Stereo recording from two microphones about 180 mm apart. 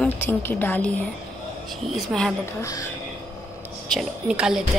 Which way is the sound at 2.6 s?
20° left (ahead or behind).